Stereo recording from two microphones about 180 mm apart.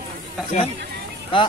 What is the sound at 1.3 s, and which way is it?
Speech, 30° left (ahead or behind).